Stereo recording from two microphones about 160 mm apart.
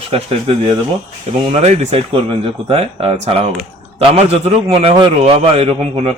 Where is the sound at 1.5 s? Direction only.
40° right (ahead or behind).